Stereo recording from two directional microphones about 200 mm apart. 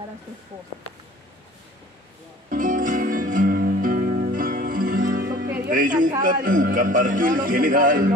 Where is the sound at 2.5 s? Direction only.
40° right (ahead or behind).